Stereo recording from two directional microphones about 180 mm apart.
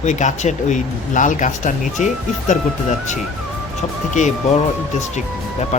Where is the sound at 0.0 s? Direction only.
40° left (ahead or behind).